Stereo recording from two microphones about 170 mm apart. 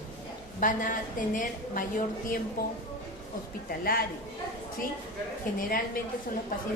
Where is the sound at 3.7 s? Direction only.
60° left (ahead or behind).